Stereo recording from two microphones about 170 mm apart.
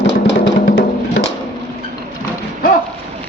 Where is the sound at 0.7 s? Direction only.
60° left (ahead or behind).